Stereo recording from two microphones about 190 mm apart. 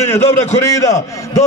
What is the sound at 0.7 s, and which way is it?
Speech, 15° left (ahead or behind).